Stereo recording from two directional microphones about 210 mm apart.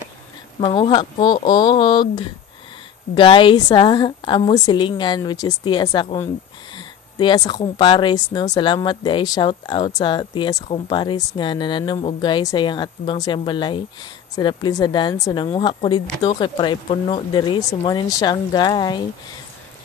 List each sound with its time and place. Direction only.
0.6 s speech: 25° left (ahead or behind)